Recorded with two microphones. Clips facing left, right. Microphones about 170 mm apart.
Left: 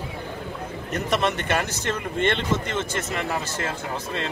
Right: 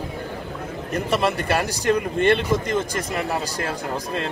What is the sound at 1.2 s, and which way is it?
Speech, 35° right (ahead or behind).